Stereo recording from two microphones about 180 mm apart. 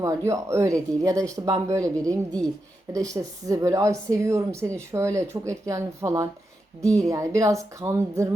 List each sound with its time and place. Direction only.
0.3 s a woman's voice: 15° right (ahead or behind)